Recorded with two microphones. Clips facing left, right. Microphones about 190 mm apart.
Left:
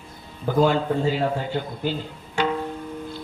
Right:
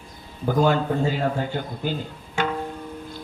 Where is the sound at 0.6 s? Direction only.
45° right (ahead or behind).